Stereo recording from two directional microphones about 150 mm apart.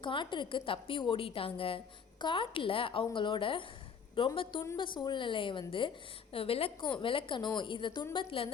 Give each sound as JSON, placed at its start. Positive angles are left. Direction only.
{"t": 0.0, "sound": "a woman's voice", "side_deg": 30}